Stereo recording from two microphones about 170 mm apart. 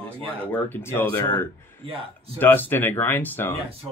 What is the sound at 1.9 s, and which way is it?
Speech, 35° right (ahead or behind).